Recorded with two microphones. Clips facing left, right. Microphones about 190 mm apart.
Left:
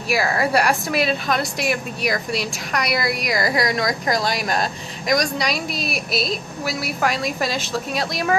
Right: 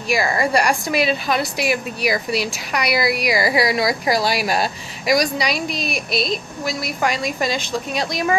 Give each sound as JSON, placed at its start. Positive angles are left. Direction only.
{"t": 0.1, "sound": "a woman's voice", "side_deg": 0}